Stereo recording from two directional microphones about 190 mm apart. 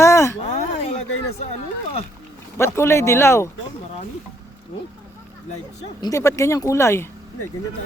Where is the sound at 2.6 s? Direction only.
15° left (ahead or behind).